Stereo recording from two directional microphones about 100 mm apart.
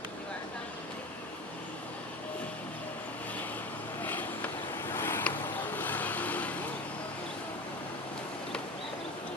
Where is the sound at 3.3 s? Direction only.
15° left (ahead or behind).